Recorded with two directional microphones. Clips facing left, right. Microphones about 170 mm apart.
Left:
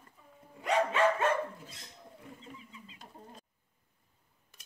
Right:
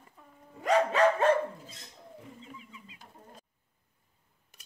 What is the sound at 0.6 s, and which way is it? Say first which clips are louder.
Dog: right 4 dB; 40° right (ahead or behind).